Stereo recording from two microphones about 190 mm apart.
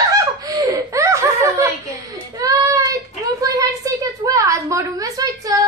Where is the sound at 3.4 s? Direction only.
20° right (ahead or behind).